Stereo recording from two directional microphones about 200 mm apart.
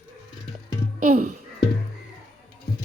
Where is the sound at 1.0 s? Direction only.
40° right (ahead or behind).